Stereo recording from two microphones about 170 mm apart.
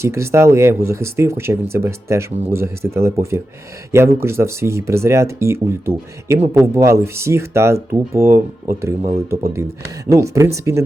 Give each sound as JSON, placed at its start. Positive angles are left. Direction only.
{"t": 0.0, "sound": "speech", "side_deg": -15}